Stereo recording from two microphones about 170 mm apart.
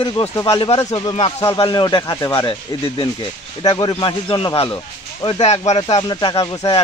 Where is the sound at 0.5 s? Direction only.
35° left (ahead or behind).